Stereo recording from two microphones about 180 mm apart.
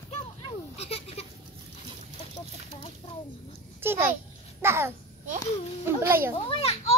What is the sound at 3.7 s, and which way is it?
Speech, 15° right (ahead or behind).